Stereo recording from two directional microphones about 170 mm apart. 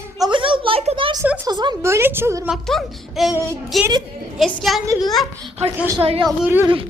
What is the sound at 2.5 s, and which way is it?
A child's voice, centre (ahead or behind).